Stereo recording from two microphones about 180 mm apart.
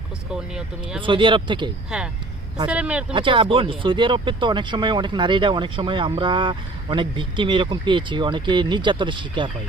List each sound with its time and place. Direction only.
0.5 s speech: 5° right (ahead or behind)
1.0 s speech: 25° right (ahead or behind)
2.6 s speech: 5° right (ahead or behind)
3.2 s speech: 25° right (ahead or behind)